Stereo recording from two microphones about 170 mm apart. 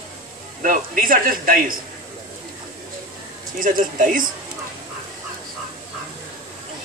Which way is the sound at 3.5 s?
50° right (ahead or behind).